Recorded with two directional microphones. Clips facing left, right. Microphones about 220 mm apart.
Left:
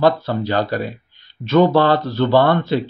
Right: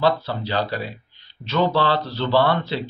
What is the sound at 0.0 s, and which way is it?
Speech, 50° left (ahead or behind).